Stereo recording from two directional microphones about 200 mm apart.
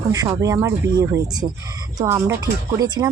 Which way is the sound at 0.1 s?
15° right (ahead or behind).